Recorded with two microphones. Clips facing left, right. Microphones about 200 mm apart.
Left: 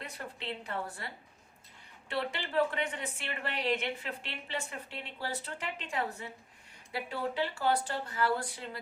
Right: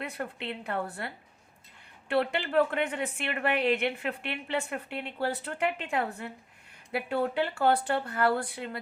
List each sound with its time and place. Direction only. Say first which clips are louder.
0.0 s a woman's voice: right 6 dB; 60° right (ahead or behind)